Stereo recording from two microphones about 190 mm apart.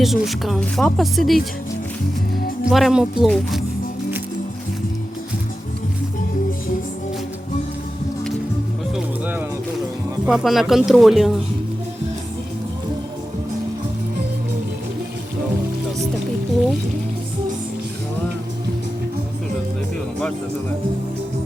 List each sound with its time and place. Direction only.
0.0 s speech: centre (ahead or behind)
2.6 s speech: centre (ahead or behind)
9.0 s music: 10° right (ahead or behind)
10.2 s speech: centre (ahead or behind)